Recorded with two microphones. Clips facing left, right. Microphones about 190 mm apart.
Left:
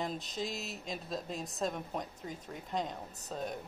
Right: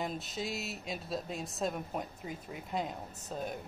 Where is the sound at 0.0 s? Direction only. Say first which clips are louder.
Even; 5° right (ahead or behind).